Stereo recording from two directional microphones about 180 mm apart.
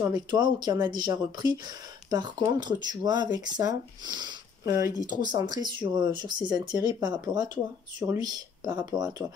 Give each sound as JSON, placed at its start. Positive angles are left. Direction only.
{"t": 0.0, "sound": "speech", "side_deg": -25}
{"t": 4.6, "sound": "speech", "side_deg": -15}
{"t": 5.2, "sound": "speech", "side_deg": -25}